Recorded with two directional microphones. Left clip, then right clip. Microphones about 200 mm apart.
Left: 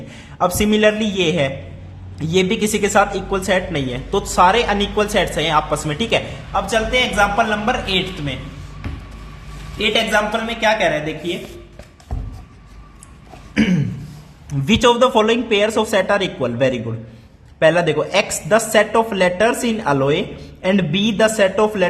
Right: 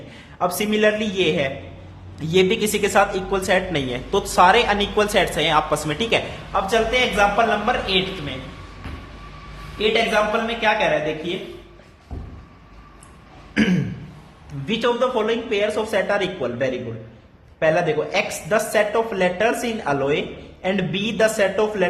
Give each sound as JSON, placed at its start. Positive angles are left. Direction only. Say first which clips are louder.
{"t": 0.1, "sound": "a man's voice", "louder": "left 4 dB", "side_deg": 25}
{"t": 10.4, "sound": "speech", "louder": "left 3 dB", "side_deg": 25}
{"t": 13.5, "sound": "throat clearing", "louder": "left 2 dB", "side_deg": 20}
{"t": 14.7, "sound": "speech", "louder": "left 7 dB", "side_deg": 30}